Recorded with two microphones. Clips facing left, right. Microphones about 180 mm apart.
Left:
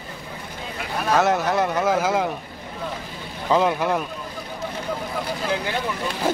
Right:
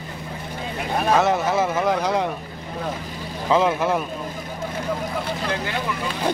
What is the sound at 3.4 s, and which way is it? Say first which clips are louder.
Speech: right 1 dB; centre (ahead or behind).